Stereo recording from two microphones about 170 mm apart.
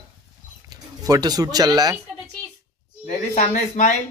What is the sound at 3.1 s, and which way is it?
Speech, 45° left (ahead or behind).